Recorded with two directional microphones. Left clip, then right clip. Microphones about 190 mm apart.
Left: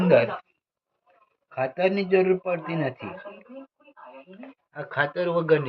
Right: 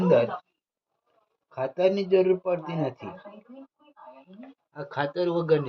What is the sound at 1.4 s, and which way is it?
A man's voice, 25° right (ahead or behind).